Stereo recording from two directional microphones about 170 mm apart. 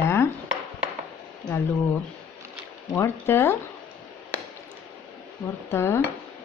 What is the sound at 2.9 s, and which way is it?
Speech, 15° left (ahead or behind).